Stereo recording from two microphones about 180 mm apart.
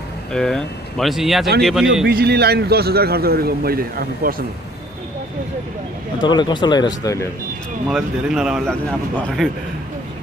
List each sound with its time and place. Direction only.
0.3 s speech: 5° left (ahead or behind)
2.0 s speech: 60° right (ahead or behind)
6.2 s speech: 25° left (ahead or behind)
7.9 s speech: centre (ahead or behind)